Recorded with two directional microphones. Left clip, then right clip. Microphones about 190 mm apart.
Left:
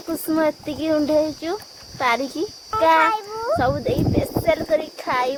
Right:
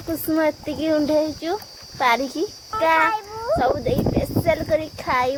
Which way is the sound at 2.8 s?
20° left (ahead or behind).